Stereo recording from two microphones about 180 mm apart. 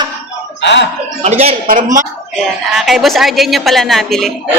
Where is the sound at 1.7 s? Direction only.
45° right (ahead or behind).